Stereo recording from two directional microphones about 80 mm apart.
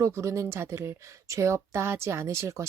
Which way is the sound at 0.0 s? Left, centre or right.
Right.